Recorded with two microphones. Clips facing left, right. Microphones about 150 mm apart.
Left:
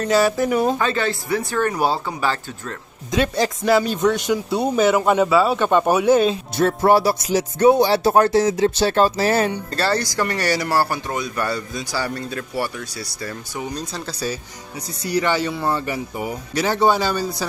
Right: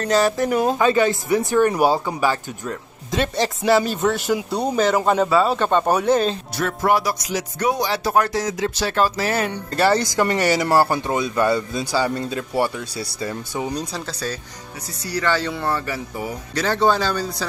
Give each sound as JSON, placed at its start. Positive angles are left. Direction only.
{"t": 0.0, "sound": "speech", "side_deg": 5}
{"t": 0.7, "sound": "speech", "side_deg": -15}
{"t": 3.1, "sound": "speech", "side_deg": 0}
{"t": 6.5, "sound": "speech", "side_deg": 30}
{"t": 9.7, "sound": "speech", "side_deg": -15}
{"t": 15.0, "sound": "speech", "side_deg": 15}